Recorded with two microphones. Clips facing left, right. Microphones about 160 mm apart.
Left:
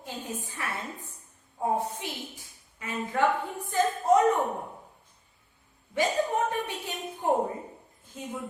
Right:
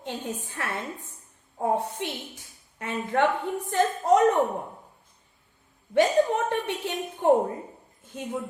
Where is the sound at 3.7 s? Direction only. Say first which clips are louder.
Right 2 dB; 70° right (ahead or behind).